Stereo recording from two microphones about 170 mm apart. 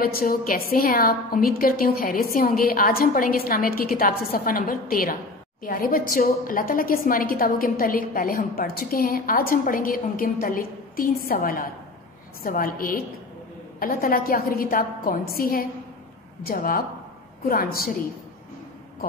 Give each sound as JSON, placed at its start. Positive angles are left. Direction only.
{"t": 0.0, "sound": "a woman's voice", "side_deg": 60}